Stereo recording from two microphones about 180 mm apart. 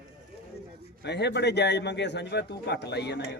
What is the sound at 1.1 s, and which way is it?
A man's voice, 70° left (ahead or behind).